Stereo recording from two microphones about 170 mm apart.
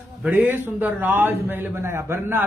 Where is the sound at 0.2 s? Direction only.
10° right (ahead or behind).